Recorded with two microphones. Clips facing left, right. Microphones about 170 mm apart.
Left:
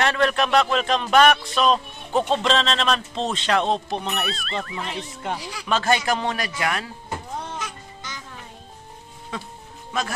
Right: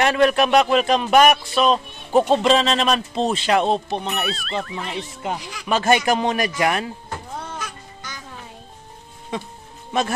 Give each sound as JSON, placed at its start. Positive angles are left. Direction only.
{"t": 0.0, "sound": "speech", "side_deg": -10}
{"t": 5.4, "sound": "speech", "side_deg": 30}
{"t": 5.7, "sound": "speech", "side_deg": -15}
{"t": 7.5, "sound": "music", "side_deg": 25}